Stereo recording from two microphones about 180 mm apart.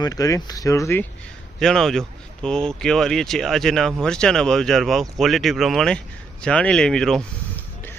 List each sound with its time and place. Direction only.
0.0 s speech: 20° left (ahead or behind)
1.5 s speech: 5° left (ahead or behind)